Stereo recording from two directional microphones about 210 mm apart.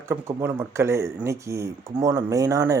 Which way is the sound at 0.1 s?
10° right (ahead or behind).